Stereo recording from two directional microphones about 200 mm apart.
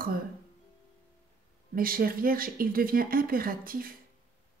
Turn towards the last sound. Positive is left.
turn(degrees=-45)  # may be behind; listen again after turning